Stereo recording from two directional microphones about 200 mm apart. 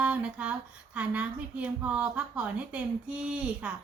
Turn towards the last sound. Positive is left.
turn(degrees=-5)  # may be behind; listen again after turning